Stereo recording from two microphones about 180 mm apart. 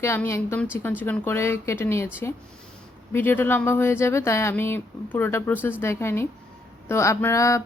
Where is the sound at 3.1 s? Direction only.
10° left (ahead or behind).